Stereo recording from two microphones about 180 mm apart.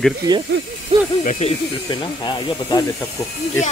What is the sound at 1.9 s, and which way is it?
Speech, 25° left (ahead or behind).